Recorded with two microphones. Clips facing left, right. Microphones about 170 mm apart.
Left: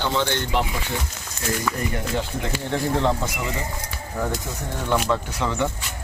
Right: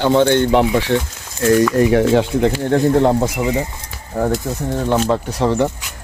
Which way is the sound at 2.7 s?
45° right (ahead or behind).